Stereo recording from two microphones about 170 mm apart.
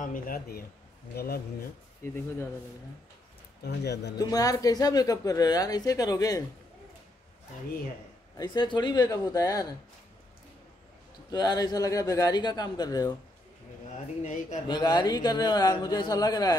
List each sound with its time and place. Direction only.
0.0 s speech: 55° left (ahead or behind)
2.0 s speech: 15° left (ahead or behind)
3.6 s speech: 85° left
4.2 s speech: 20° left (ahead or behind)
8.4 s speech: 25° left (ahead or behind)
11.2 s speech: 25° left (ahead or behind)
13.9 s speech: 45° left (ahead or behind)
14.7 s speech: 25° left (ahead or behind)